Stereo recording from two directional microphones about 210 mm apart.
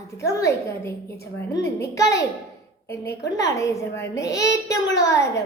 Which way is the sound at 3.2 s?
15° left (ahead or behind).